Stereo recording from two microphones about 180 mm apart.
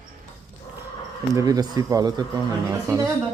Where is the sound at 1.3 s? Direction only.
20° right (ahead or behind).